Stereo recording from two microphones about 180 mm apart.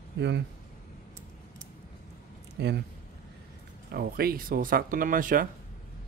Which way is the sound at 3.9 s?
55° right (ahead or behind).